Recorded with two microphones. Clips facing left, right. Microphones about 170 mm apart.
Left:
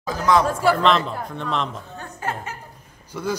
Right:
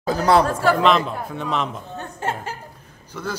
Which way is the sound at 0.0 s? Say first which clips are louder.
Right 2 dB; 35° right (ahead or behind).